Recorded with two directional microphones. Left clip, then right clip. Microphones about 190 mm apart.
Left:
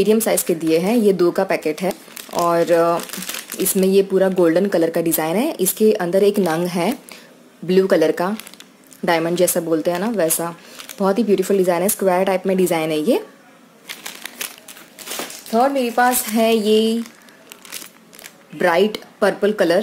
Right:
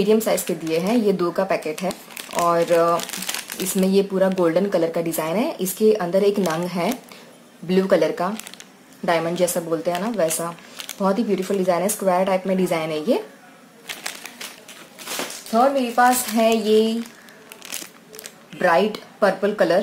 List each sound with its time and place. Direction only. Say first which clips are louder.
0.0 s speech: left 2 dB; 40° left (ahead or behind)
15.5 s speech: left 1 dB; 45° left (ahead or behind)
18.6 s speech: left 2 dB; 45° left (ahead or behind)